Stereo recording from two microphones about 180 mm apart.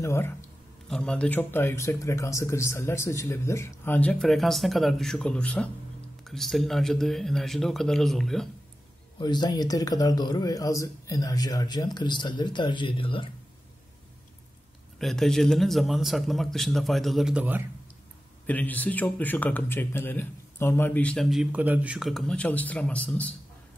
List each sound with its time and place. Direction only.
0.0 s speech: 15° left (ahead or behind)
9.2 s speech: 25° left (ahead or behind)
15.0 s speech: centre (ahead or behind)
18.5 s speech: 10° left (ahead or behind)